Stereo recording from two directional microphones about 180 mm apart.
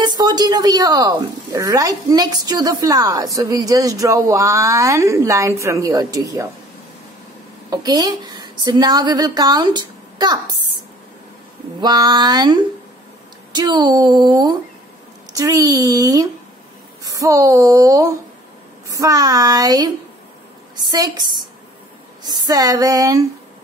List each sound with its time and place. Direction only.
0.0 s speech: 25° right (ahead or behind)
7.7 s a woman's voice: 20° right (ahead or behind)
11.8 s speech: 25° right (ahead or behind)
20.9 s speech: 25° right (ahead or behind)